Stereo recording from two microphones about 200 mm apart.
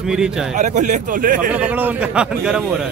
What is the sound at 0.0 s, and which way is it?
Speech, 5° right (ahead or behind).